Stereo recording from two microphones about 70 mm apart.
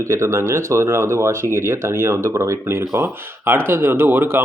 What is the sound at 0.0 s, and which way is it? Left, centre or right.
Speech, right.